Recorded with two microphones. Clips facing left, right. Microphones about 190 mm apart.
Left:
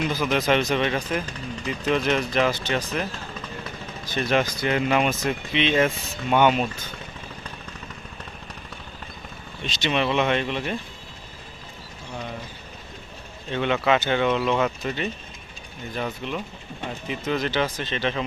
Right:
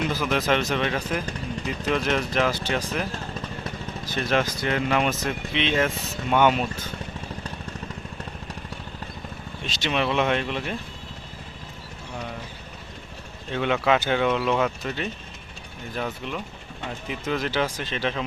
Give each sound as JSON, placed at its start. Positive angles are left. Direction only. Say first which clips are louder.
{"t": 0.2, "sound": "speech", "louder": "left 3 dB", "side_deg": 0}
{"t": 9.6, "sound": "speech", "louder": "left 1 dB", "side_deg": -5}
{"t": 13.5, "sound": "speech", "louder": "even", "side_deg": 0}